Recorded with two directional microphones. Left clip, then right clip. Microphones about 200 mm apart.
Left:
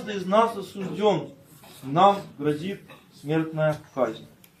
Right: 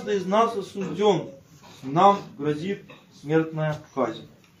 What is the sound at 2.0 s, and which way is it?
A man's voice, centre (ahead or behind).